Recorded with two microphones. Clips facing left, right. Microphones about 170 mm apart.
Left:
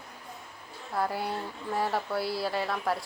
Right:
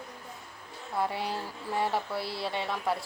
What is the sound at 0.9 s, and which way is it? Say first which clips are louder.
Speech: left 1 dB; centre (ahead or behind).